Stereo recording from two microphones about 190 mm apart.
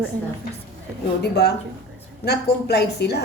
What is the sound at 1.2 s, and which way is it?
A woman's voice, 60° left (ahead or behind).